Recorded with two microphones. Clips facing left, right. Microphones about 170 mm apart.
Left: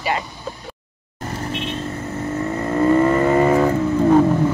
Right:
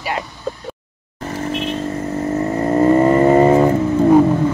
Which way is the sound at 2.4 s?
35° right (ahead or behind).